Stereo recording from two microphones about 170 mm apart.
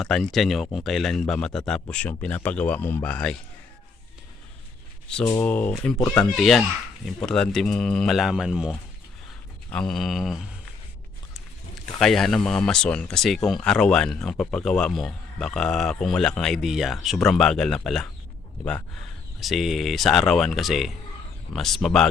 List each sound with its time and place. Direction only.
0.0 s speech: centre (ahead or behind)
5.2 s speech: 15° left (ahead or behind)
11.9 s speech: centre (ahead or behind)
19.4 s speech: centre (ahead or behind)